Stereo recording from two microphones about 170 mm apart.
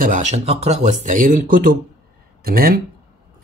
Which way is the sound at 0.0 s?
45° right (ahead or behind).